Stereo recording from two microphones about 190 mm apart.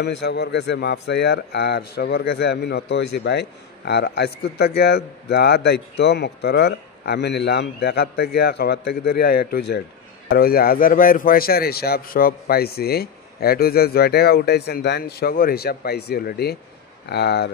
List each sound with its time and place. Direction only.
0.0 s speech: 65° left (ahead or behind)